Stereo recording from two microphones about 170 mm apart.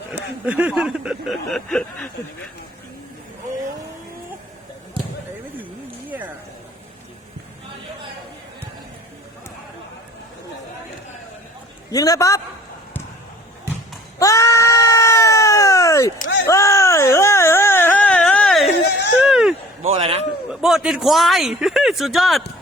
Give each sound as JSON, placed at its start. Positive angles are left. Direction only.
{"t": 0.4, "sound": "speech", "side_deg": -10}
{"t": 6.1, "sound": "a sound", "side_deg": -10}
{"t": 11.9, "sound": "a man's voice", "side_deg": 20}
{"t": 14.2, "sound": "a sound", "side_deg": 20}
{"t": 19.8, "sound": "a man's voice", "side_deg": -40}
{"t": 20.5, "sound": "speech", "side_deg": 0}